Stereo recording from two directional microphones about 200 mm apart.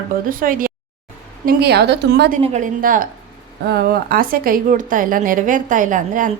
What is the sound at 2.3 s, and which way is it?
A woman's voice, 40° right (ahead or behind).